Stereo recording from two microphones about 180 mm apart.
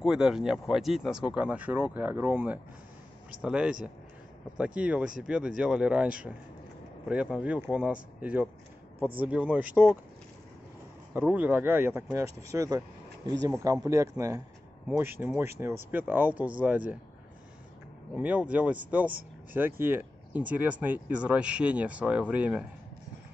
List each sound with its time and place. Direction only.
0.0 s speech: 5° right (ahead or behind)
11.1 s speech: 10° right (ahead or behind)
18.1 s speech: 5° right (ahead or behind)